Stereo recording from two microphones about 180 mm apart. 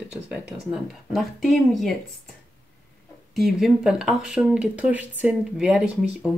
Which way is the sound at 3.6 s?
5° right (ahead or behind).